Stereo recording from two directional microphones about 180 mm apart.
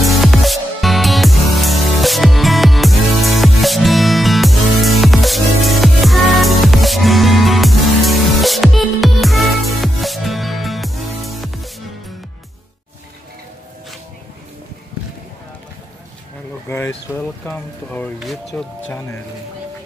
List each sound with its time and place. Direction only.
0.0 s music: centre (ahead or behind)
16.6 s speech: 15° left (ahead or behind)